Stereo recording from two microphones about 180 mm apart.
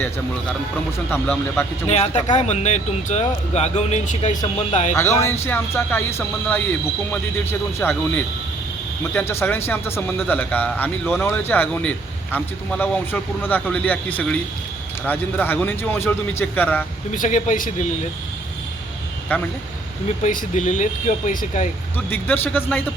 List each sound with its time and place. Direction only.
1.1 s a man's voice: 15° left (ahead or behind)
1.9 s speech: 35° left (ahead or behind)
4.9 s a man's voice: 15° left (ahead or behind)
7.8 s a man's voice: 10° left (ahead or behind)
17.1 s speech: 45° left (ahead or behind)
19.3 s a man's voice: 10° left (ahead or behind)
20.2 s speech: 45° left (ahead or behind)
21.9 s a man's voice: 10° left (ahead or behind)